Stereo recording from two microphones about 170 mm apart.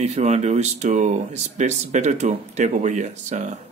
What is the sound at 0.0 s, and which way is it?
Speech, 40° right (ahead or behind).